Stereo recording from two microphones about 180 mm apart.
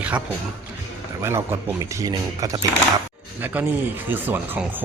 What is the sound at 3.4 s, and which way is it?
Speech, 10° right (ahead or behind).